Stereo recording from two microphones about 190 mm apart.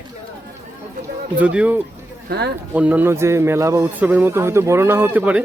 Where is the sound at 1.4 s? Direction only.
5° right (ahead or behind).